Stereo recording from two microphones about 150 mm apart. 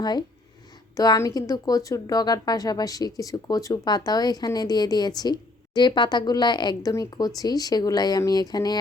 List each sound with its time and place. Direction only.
0.0 s speech: 30° left (ahead or behind)